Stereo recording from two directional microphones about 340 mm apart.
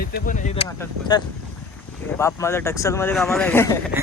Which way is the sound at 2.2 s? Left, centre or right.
Centre.